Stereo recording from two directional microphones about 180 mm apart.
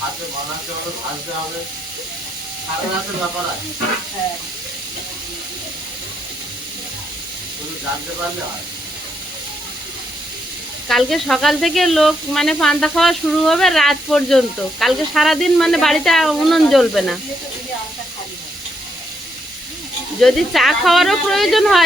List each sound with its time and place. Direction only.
10.8 s speech: centre (ahead or behind)
20.2 s speech: centre (ahead or behind)